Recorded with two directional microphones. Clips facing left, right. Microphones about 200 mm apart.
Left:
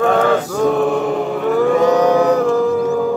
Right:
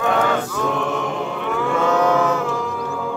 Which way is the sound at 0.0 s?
40° left (ahead or behind).